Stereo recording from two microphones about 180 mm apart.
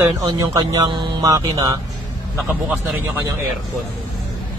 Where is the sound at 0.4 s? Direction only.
20° right (ahead or behind).